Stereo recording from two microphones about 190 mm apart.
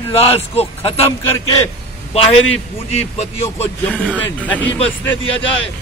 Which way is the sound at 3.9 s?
5° left (ahead or behind).